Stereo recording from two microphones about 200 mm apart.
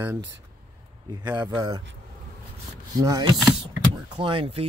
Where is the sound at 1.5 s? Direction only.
20° right (ahead or behind).